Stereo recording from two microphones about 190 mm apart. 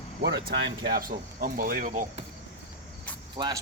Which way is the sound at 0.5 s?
75° right (ahead or behind).